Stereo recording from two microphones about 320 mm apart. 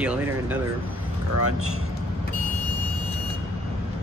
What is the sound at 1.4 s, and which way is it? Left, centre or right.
Speech, right.